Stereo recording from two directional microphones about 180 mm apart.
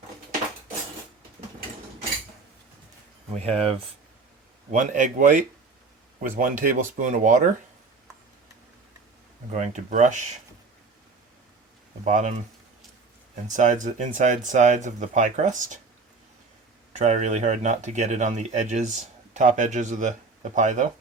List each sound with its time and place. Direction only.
3.3 s speech: 35° right (ahead or behind)
9.5 s speech: 45° right (ahead or behind)
12.0 s speech: 40° right (ahead or behind)
13.5 s speech: 45° right (ahead or behind)
16.9 s speech: 40° right (ahead or behind)